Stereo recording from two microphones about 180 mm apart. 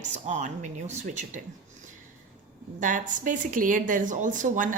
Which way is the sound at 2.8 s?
45° right (ahead or behind).